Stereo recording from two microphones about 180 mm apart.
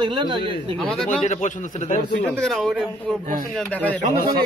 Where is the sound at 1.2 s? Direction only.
40° left (ahead or behind).